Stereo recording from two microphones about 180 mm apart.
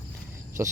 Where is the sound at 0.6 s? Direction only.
15° right (ahead or behind).